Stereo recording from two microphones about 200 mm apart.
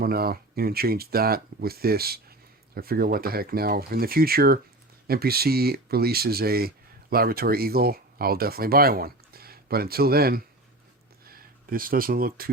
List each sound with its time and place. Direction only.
0.0 s speech: 50° right (ahead or behind)